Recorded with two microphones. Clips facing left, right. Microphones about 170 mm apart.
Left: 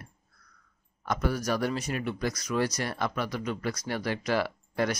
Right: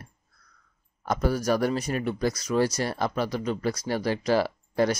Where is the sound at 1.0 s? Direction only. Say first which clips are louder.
Right 4 dB; 35° right (ahead or behind).